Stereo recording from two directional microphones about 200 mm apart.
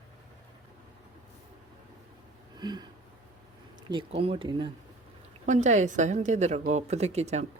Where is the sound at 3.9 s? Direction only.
25° right (ahead or behind).